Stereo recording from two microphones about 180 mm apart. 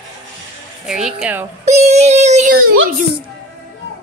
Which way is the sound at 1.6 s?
40° right (ahead or behind).